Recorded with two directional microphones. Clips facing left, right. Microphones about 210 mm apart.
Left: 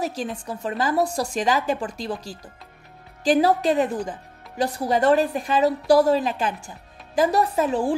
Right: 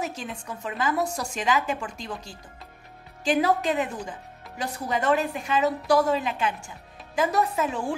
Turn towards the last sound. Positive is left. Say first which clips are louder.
# left 5 dB
turn(degrees=35)  # may be behind; listen again after turning